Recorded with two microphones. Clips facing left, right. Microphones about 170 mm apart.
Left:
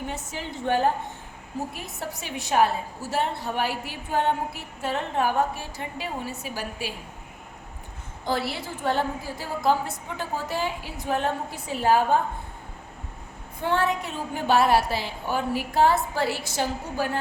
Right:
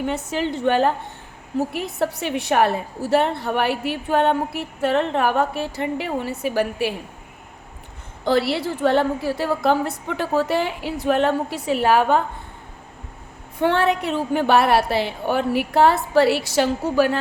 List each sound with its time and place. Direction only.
0.0 s a woman's voice: 70° right (ahead or behind)
8.2 s a woman's voice: 75° right (ahead or behind)
13.6 s a woman's voice: 70° right (ahead or behind)